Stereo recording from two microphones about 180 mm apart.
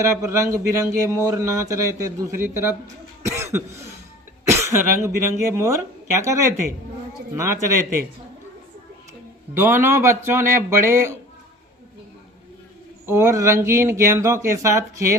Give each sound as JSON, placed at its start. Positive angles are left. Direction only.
{"t": 0.0, "sound": "speech", "side_deg": -15}
{"t": 3.2, "sound": "cough", "side_deg": -15}
{"t": 4.5, "sound": "speech", "side_deg": -15}
{"t": 9.6, "sound": "speech", "side_deg": -15}
{"t": 13.1, "sound": "speech", "side_deg": -15}